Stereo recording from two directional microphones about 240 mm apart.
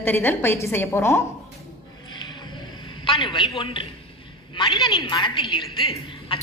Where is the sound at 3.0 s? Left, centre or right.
Left.